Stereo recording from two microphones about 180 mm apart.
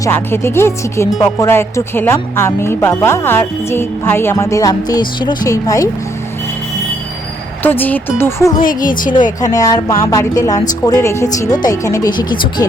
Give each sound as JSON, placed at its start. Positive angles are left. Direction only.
{"t": 0.0, "sound": "speech", "side_deg": 15}
{"t": 7.6, "sound": "speech", "side_deg": 10}
{"t": 8.6, "sound": "a woman's voice", "side_deg": 50}
{"t": 9.4, "sound": "speech", "side_deg": 20}